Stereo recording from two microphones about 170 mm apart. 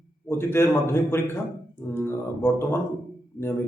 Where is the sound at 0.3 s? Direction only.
15° left (ahead or behind).